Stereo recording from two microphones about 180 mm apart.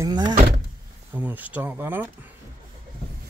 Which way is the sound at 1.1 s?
10° right (ahead or behind).